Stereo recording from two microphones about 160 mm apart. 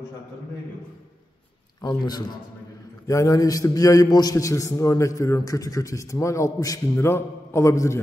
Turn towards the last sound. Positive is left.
turn(degrees=20)  # may be behind; listen again after turning